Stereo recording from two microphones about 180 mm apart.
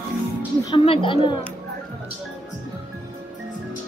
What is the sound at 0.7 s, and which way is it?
Speech, 30° left (ahead or behind).